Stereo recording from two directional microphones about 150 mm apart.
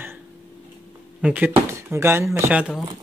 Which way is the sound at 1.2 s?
10° right (ahead or behind).